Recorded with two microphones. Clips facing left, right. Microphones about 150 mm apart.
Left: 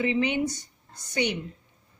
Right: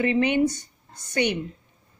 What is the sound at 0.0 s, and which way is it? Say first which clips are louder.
A woman's voice: right 4 dB; 55° right (ahead or behind).